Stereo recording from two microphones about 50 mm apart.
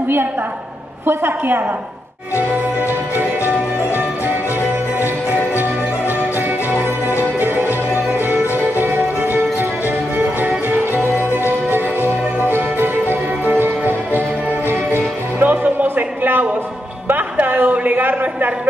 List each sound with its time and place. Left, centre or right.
1.0 s a woman's voice: right
2.5 s music: right
17.1 s a sound: right